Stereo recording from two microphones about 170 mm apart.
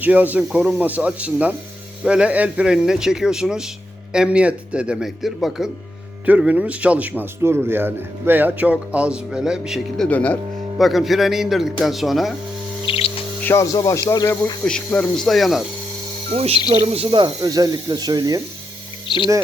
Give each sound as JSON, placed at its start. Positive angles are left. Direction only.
{"t": 0.0, "sound": "speech", "side_deg": -10}
{"t": 10.1, "sound": "speech", "side_deg": 10}
{"t": 12.8, "sound": "bird", "side_deg": 30}
{"t": 13.4, "sound": "speech", "side_deg": 15}
{"t": 14.6, "sound": "speech", "side_deg": 5}
{"t": 16.3, "sound": "speech", "side_deg": -35}
{"t": 19.0, "sound": "speech", "side_deg": 30}